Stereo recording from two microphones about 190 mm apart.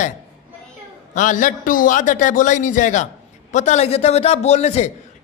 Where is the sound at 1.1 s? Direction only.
40° left (ahead or behind).